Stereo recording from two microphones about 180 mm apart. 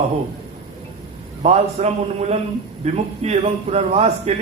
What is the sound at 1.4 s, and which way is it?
A man's voice, 35° right (ahead or behind).